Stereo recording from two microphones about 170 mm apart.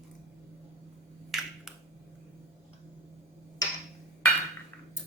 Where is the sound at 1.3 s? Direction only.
Centre (ahead or behind).